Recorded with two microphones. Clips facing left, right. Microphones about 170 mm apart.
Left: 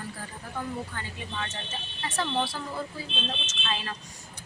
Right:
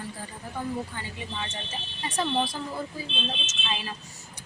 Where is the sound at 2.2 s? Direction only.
15° right (ahead or behind).